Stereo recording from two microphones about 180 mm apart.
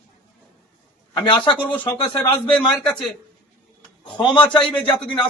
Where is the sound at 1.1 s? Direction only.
25° left (ahead or behind).